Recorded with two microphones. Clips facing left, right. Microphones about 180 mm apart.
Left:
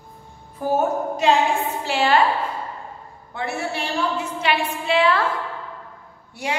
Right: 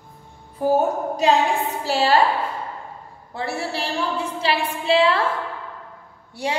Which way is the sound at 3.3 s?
35° right (ahead or behind).